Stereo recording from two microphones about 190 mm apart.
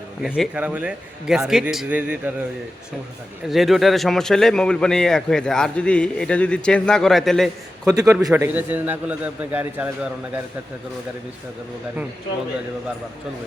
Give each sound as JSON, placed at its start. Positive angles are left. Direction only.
{"t": 0.2, "sound": "a man's voice", "side_deg": -5}
{"t": 3.5, "sound": "a man's voice", "side_deg": 0}
{"t": 7.9, "sound": "a man's voice", "side_deg": -15}